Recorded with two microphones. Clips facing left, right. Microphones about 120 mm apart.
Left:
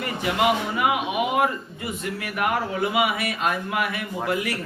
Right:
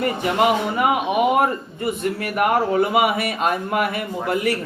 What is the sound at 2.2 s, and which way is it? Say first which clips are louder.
Speech: right 5 dB; 40° right (ahead or behind).